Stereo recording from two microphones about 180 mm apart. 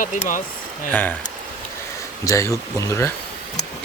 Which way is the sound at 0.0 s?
45° left (ahead or behind).